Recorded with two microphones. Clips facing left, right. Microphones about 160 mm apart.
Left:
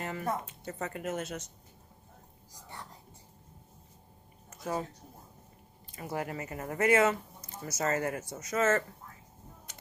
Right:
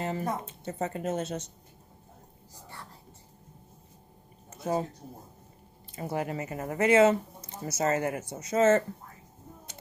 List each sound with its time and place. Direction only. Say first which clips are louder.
0.0 s speech: right 3 dB; 30° right (ahead or behind)
4.5 s a sound: right 5 dB; 25° right (ahead or behind)
5.9 s speech: right 4 dB; 25° right (ahead or behind)